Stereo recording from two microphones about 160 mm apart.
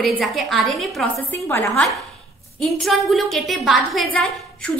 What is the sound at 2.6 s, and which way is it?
A woman's voice, centre (ahead or behind).